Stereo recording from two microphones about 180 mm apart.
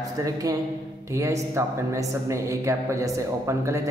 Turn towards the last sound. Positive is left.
turn(degrees=-15)  # may be behind; listen again after turning